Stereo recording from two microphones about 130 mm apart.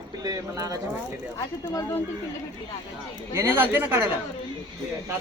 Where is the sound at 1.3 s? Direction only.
25° left (ahead or behind).